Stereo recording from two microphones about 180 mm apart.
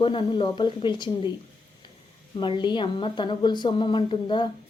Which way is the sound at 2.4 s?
25° left (ahead or behind).